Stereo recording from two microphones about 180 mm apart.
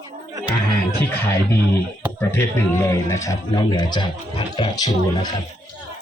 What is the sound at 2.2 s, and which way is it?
A man's voice, 15° left (ahead or behind).